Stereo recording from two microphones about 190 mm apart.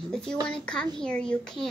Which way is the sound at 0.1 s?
5° left (ahead or behind).